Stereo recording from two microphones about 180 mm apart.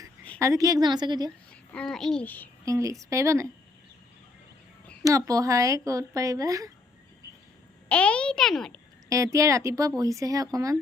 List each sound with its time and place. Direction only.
0.3 s speech: 15° right (ahead or behind)
1.7 s a child's voice: 5° left (ahead or behind)
2.6 s speech: 20° right (ahead or behind)
5.0 s speech: 20° right (ahead or behind)
7.9 s a child's voice: 5° left (ahead or behind)
9.0 s speech: 20° right (ahead or behind)